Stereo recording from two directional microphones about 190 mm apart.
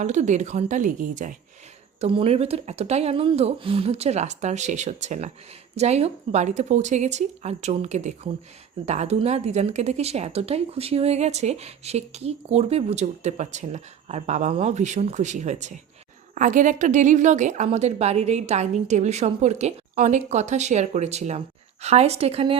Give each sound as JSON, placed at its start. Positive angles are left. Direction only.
{"t": 0.0, "sound": "speech", "side_deg": -40}
{"t": 2.0, "sound": "speech", "side_deg": -30}